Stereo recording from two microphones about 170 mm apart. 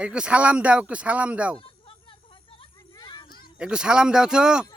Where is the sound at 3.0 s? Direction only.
25° left (ahead or behind).